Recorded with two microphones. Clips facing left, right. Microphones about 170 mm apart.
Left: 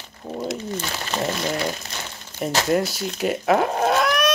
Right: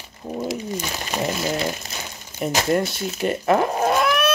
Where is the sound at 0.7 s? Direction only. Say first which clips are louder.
Even; 10° right (ahead or behind).